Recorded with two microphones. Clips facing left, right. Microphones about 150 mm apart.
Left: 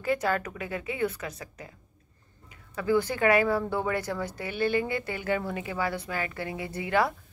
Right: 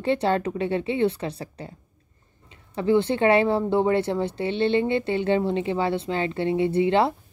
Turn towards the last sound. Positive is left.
turn(degrees=-25)  # may be behind; listen again after turning